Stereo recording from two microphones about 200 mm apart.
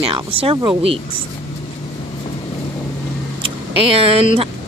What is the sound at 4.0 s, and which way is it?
Speech, 30° right (ahead or behind).